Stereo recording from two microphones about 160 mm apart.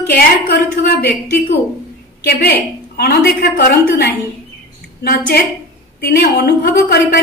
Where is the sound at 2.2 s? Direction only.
75° left (ahead or behind).